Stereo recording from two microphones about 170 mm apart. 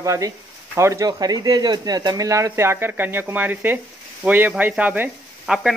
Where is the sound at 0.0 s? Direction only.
20° right (ahead or behind).